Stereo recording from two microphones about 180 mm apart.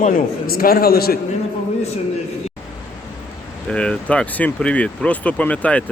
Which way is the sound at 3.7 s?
5° left (ahead or behind).